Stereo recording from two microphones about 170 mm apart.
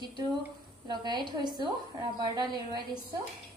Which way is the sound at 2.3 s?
25° right (ahead or behind).